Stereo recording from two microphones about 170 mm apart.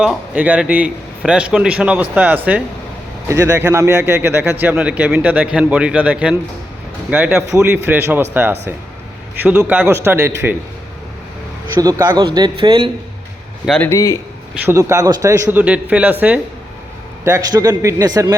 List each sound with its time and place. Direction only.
0.0 s a man's voice: 10° right (ahead or behind)
11.8 s a man's voice: 20° right (ahead or behind)
13.7 s a man's voice: 10° left (ahead or behind)
14.6 s a man's voice: 15° right (ahead or behind)